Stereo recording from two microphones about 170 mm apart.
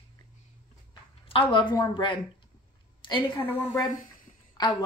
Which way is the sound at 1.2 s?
30° left (ahead or behind).